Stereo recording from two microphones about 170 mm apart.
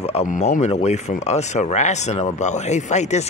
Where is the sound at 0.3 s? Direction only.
45° left (ahead or behind).